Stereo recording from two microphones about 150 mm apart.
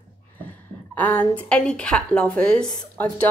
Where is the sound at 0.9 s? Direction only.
10° left (ahead or behind).